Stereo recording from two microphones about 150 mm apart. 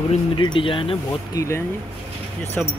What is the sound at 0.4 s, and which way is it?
Speech, 35° left (ahead or behind).